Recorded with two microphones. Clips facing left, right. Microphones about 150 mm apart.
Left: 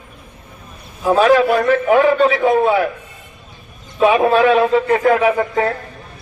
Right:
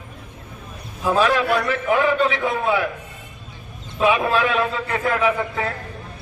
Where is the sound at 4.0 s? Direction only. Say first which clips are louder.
Left 6 dB; 40° left (ahead or behind).